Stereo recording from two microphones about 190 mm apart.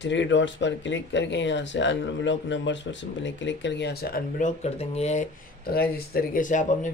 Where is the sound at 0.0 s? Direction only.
70° left (ahead or behind).